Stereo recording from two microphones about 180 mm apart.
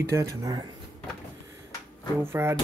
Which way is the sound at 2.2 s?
15° right (ahead or behind).